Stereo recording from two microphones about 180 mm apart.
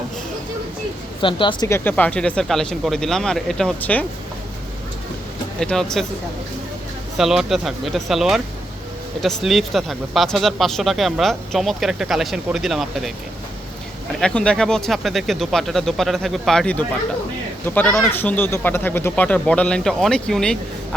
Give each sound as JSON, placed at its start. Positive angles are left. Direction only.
{"t": 1.2, "sound": "speech", "side_deg": 25}
{"t": 1.6, "sound": "speech", "side_deg": 15}
{"t": 5.5, "sound": "speech", "side_deg": 5}
{"t": 7.2, "sound": "speech", "side_deg": 0}
{"t": 14.2, "sound": "speech", "side_deg": 5}